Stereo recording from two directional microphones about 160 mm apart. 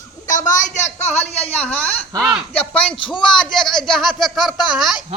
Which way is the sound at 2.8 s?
30° left (ahead or behind).